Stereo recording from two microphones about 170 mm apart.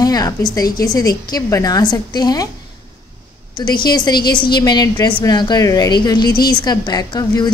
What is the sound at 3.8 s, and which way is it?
A woman's voice, 25° left (ahead or behind).